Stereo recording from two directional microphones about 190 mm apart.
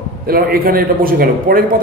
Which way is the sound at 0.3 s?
50° right (ahead or behind).